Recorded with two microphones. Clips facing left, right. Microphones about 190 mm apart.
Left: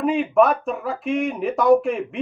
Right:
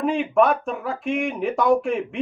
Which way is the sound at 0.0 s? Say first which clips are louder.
Left 2 dB; centre (ahead or behind).